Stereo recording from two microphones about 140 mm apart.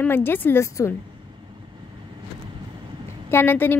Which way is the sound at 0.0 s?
15° left (ahead or behind).